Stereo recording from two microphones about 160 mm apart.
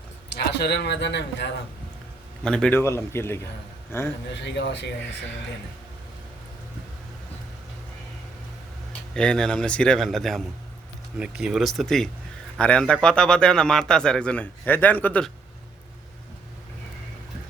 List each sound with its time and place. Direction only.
0.3 s speech: 90° left
2.4 s a man's voice: 5° left (ahead or behind)
4.4 s speech: 90° left
9.1 s speech: 5° left (ahead or behind)